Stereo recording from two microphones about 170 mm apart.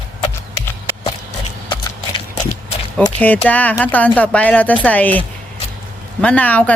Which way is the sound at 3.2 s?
10° left (ahead or behind).